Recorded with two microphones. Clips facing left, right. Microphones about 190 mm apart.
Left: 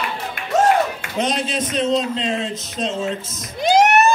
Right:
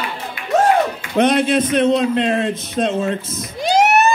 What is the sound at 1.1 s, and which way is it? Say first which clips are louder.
A man's voice: right 10 dB; 60° right (ahead or behind).